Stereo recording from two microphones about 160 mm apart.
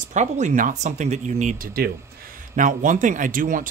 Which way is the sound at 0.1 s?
50° right (ahead or behind).